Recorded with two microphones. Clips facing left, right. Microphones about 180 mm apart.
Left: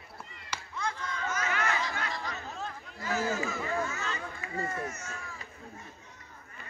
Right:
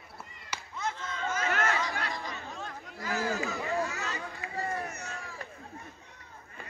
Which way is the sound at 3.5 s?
35° right (ahead or behind).